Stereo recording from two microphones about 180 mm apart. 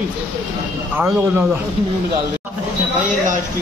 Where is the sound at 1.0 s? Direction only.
10° right (ahead or behind).